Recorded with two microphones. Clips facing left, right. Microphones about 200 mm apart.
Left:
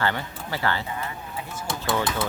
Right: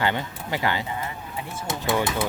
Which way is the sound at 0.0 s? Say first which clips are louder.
Right 1 dB; 15° right (ahead or behind).